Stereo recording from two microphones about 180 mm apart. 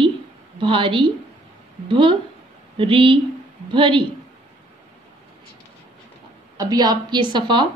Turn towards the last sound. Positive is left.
turn(degrees=-25)  # may be behind; listen again after turning